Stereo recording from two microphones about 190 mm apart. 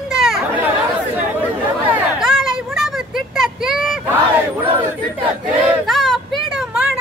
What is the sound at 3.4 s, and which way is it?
Vehicle, centre (ahead or behind).